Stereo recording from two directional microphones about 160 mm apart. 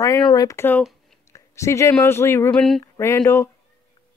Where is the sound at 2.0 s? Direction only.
15° left (ahead or behind).